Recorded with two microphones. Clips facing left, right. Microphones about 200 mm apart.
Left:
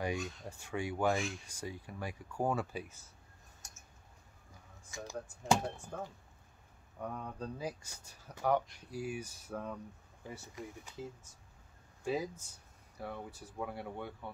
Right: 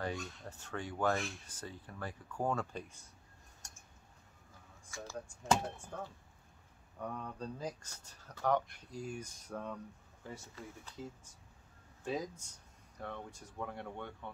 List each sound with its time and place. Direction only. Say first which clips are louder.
0.0 s speech: left 3 dB; 15° left (ahead or behind)
4.9 s speech: left 2 dB; 20° left (ahead or behind)
12.0 s speech: left 3 dB; 10° left (ahead or behind)